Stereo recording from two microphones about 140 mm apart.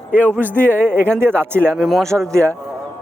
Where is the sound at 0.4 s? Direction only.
15° right (ahead or behind).